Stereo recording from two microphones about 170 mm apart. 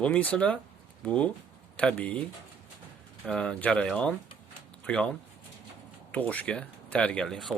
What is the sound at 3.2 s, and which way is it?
Speech, 5° left (ahead or behind).